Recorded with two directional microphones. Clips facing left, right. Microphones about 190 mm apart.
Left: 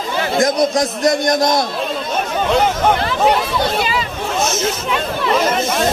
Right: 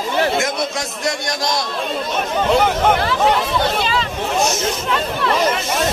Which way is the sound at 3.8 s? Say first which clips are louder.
Left 1 dB; 10° left (ahead or behind).